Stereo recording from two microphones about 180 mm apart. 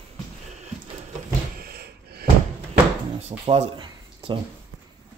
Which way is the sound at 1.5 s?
60° right (ahead or behind).